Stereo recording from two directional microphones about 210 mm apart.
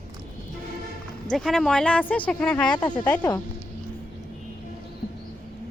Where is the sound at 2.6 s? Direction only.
20° left (ahead or behind).